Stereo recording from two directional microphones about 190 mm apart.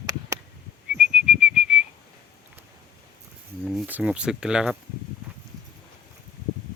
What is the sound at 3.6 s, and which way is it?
Speech, 5° right (ahead or behind).